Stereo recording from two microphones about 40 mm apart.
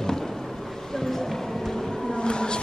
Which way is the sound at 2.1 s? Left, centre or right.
Left.